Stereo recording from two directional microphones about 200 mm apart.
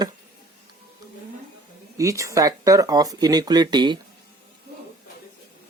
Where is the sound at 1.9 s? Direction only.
15° right (ahead or behind).